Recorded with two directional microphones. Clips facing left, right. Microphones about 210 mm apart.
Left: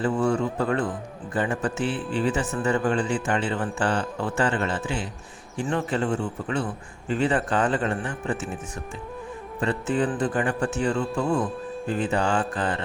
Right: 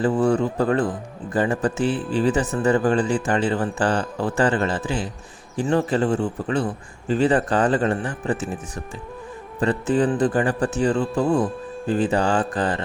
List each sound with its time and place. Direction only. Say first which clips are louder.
0.0 s speech: right 4 dB; 35° right (ahead or behind)